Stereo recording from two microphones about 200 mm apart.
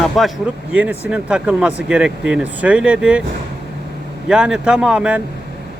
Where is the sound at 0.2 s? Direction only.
Centre (ahead or behind).